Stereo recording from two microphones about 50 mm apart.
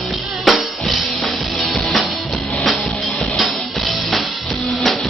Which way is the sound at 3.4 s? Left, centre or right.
Centre.